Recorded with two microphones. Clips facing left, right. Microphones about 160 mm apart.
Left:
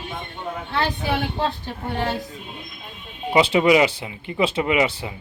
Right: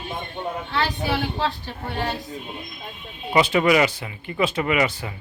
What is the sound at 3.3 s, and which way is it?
Speech, 20° left (ahead or behind).